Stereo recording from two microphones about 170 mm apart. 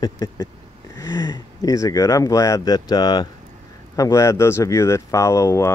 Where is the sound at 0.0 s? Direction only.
25° left (ahead or behind).